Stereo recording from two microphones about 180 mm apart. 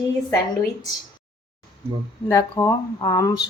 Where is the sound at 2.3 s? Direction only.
15° left (ahead or behind).